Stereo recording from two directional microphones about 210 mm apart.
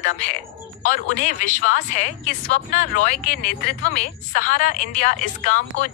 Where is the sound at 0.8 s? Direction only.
40° left (ahead or behind).